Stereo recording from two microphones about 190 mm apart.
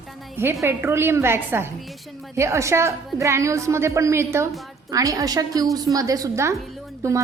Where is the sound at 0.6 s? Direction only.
10° right (ahead or behind).